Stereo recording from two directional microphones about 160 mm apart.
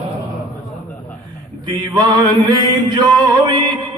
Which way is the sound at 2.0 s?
25° right (ahead or behind).